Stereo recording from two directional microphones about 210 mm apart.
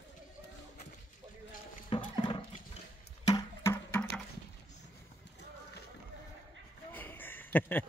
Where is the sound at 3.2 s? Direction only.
15° left (ahead or behind).